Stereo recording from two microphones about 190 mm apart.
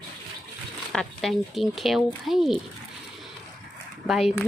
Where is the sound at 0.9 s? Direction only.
Centre (ahead or behind).